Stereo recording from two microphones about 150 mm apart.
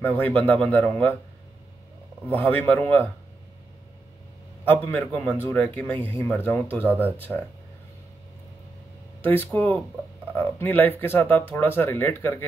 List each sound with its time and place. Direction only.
0.0 s a man's voice: 10° left (ahead or behind)
2.2 s a man's voice: 10° left (ahead or behind)
4.6 s a man's voice: 10° left (ahead or behind)
9.2 s a man's voice: 15° left (ahead or behind)